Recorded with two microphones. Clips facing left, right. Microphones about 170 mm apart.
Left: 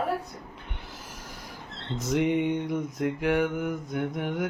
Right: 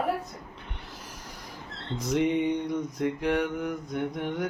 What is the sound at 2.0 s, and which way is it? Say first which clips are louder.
Mantra: even; centre (ahead or behind).